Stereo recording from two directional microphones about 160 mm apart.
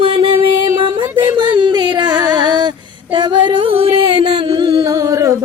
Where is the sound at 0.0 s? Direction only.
35° right (ahead or behind).